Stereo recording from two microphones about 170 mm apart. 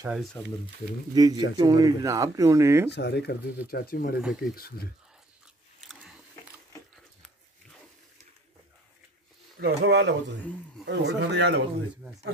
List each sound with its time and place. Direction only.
0.1 s speech: centre (ahead or behind)
1.1 s speech: 20° right (ahead or behind)
2.9 s speech: 85° left; by 4.8 s 65° left (ahead or behind)
5.9 s a sound: centre (ahead or behind)
9.6 s speech: 85° right